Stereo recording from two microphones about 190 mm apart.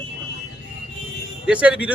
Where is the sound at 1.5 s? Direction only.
5° right (ahead or behind).